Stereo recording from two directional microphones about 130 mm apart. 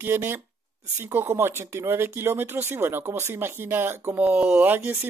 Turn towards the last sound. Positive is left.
turn(degrees=-15)  # may be behind; listen again after turning